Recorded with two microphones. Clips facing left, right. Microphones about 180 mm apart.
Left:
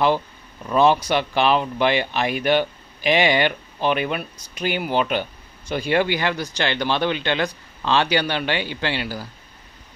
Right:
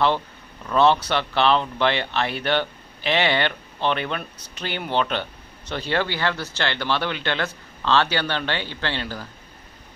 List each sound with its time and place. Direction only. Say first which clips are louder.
0.7 s speech: left 1 dB; 10° left (ahead or behind)